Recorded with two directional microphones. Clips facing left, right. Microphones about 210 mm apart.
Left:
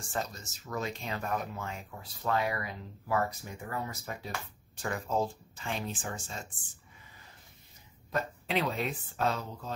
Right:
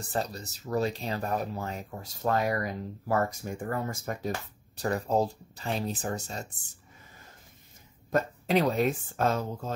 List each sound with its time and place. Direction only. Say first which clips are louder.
0.0 s speech: right 4 dB; 35° right (ahead or behind)
8.1 s speech: right 7 dB; 45° right (ahead or behind)